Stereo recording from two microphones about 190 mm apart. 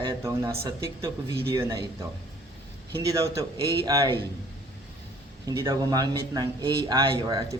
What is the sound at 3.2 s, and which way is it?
Speech, 15° right (ahead or behind).